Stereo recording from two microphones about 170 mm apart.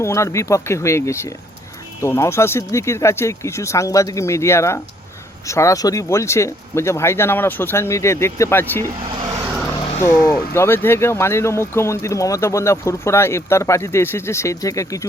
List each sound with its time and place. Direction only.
0.0 s speech: 15° left (ahead or behind)
10.2 s speech: 15° left (ahead or behind)